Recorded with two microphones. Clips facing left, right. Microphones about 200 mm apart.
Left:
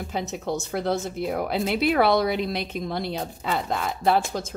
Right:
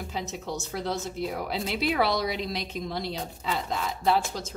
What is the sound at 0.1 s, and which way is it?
A woman's voice, 55° left (ahead or behind).